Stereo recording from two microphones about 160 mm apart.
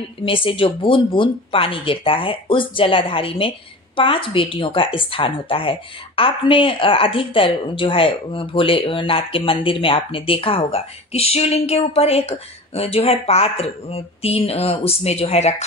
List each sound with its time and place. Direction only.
0.2 s a woman's voice: 35° left (ahead or behind)